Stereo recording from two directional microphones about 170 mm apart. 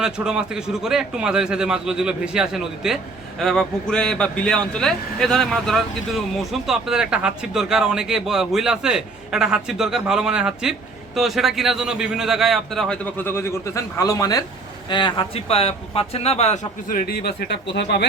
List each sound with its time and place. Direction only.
0.0 s a man's voice: 5° right (ahead or behind); by 17.0 s 40° left (ahead or behind)
17.0 s speech: 65° left (ahead or behind); by 18.1 s 90° left